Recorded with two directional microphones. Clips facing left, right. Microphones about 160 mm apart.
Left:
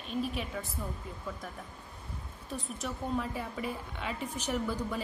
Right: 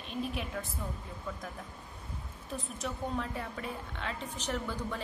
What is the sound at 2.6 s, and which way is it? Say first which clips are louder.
Speech: left 1 dB; 5° left (ahead or behind).